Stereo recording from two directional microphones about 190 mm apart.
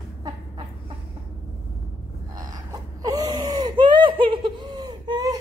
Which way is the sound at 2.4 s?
20° right (ahead or behind).